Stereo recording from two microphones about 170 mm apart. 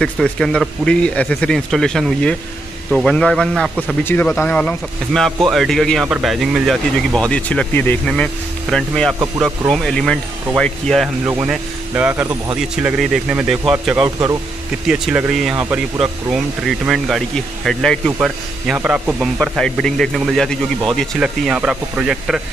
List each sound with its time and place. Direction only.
0.0 s speech: 5° left (ahead or behind)
11.2 s speech: 10° right (ahead or behind)
12.8 s speech: centre (ahead or behind)